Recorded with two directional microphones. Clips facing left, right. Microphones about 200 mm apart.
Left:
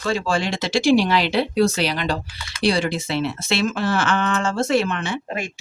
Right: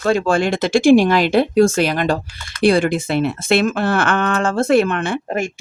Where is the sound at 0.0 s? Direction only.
55° right (ahead or behind).